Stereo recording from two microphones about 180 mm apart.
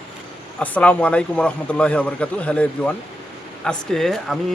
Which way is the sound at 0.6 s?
5° left (ahead or behind).